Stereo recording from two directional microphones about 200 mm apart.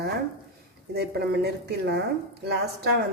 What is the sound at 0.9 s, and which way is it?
A woman's voice, 55° right (ahead or behind).